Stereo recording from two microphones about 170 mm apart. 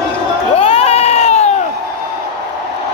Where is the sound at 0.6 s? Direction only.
35° left (ahead or behind).